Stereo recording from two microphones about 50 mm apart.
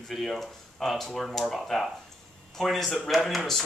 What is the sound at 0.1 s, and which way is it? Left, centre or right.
Speech, centre.